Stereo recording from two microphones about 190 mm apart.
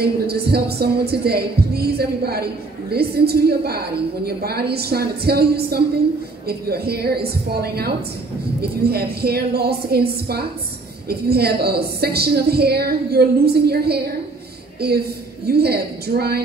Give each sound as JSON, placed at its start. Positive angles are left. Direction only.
{"t": 0.0, "sound": "music", "side_deg": -55}